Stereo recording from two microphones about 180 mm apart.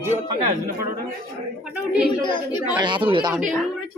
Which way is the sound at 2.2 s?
25° left (ahead or behind).